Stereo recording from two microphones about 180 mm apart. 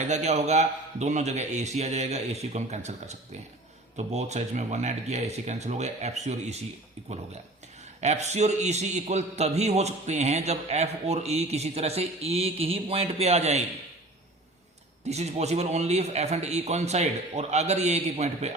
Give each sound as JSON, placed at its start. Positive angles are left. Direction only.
{"t": 0.0, "sound": "a man's voice", "side_deg": -40}
{"t": 8.0, "sound": "a man's voice", "side_deg": -40}
{"t": 15.0, "sound": "a man's voice", "side_deg": -40}